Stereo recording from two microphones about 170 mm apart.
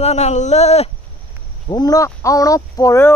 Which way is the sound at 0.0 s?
40° left (ahead or behind).